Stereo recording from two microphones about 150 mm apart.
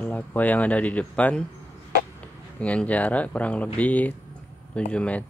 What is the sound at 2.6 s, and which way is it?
Speech, 10° left (ahead or behind).